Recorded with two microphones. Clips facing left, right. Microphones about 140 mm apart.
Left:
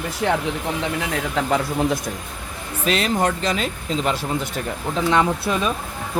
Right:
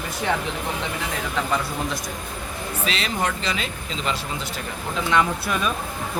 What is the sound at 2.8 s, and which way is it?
Speech, 45° left (ahead or behind).